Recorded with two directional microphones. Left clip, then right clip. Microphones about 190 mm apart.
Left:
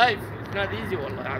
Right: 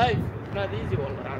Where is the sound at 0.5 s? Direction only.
50° left (ahead or behind).